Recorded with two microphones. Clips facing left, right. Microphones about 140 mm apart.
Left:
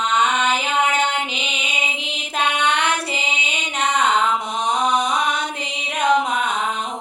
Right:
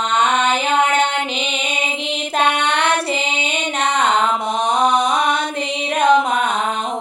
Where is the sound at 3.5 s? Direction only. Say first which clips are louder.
Right 1 dB; 60° right (ahead or behind).